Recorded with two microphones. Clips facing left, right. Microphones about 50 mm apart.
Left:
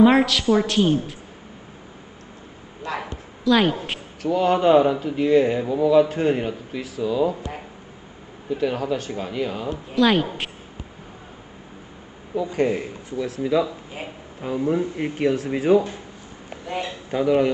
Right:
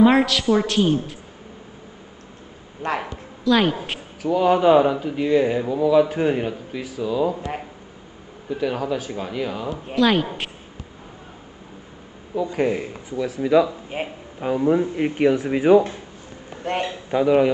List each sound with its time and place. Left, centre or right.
0.0 s speech: centre
2.8 s speech: right
3.4 s speech: centre
8.5 s speech: centre
12.4 s speech: centre
13.4 s speech: centre
13.9 s speech: right
14.4 s speech: right
16.6 s a man's voice: right
17.2 s a man's voice: centre